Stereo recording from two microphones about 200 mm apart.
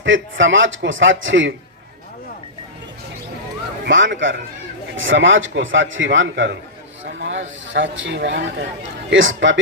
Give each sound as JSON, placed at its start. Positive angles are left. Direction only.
{"t": 0.0, "sound": "a man's voice", "side_deg": -70}
{"t": 3.8, "sound": "a man's voice", "side_deg": -65}